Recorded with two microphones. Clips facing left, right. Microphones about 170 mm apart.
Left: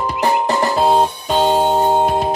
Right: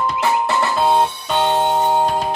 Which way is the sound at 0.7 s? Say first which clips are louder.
Left 2 dB; 15° left (ahead or behind).